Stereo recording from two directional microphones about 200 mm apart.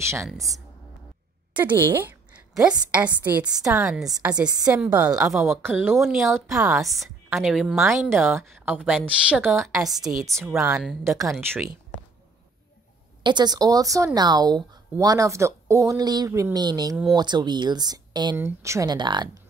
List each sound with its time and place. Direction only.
0.0 s a woman's voice: 15° right (ahead or behind)
1.5 s a sound: 10° right (ahead or behind)
2.9 s a woman's voice: 5° right (ahead or behind)
3.8 s a woman's voice: 5° right (ahead or behind)
4.5 s speech: 20° right (ahead or behind)
4.7 s a woman's voice: 10° right (ahead or behind)
13.2 s speech: 20° right (ahead or behind)